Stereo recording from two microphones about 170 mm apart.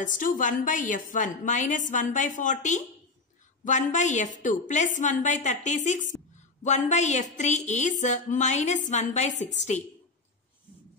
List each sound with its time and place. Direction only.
0.0 s a woman's voice: 50° left (ahead or behind)